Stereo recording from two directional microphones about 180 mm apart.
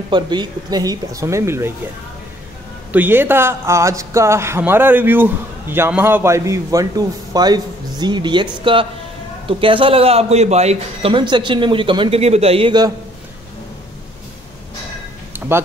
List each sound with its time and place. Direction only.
0.1 s a man's voice: 25° right (ahead or behind)
2.9 s a man's voice: 10° right (ahead or behind); by 8.5 s 25° right (ahead or behind)
9.5 s a man's voice: 30° right (ahead or behind)
15.3 s music: 10° right (ahead or behind)